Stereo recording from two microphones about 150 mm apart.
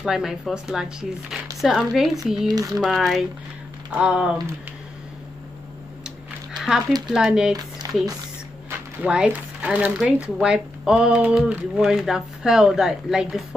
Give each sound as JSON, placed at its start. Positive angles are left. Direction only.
{"t": 0.0, "sound": "speech", "side_deg": -5}
{"t": 2.4, "sound": "speech", "side_deg": -25}
{"t": 2.8, "sound": "speech", "side_deg": 0}
{"t": 6.0, "sound": "a sound", "side_deg": -5}
{"t": 7.1, "sound": "speech", "side_deg": -5}
{"t": 8.6, "sound": "speech", "side_deg": -10}